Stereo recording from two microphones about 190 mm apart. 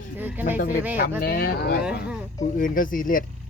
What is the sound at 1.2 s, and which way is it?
Speech, 50° left (ahead or behind).